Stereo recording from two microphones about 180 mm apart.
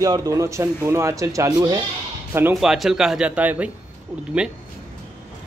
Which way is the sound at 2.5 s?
Centre (ahead or behind).